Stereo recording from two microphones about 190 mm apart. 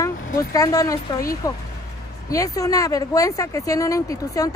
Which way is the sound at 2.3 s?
20° left (ahead or behind).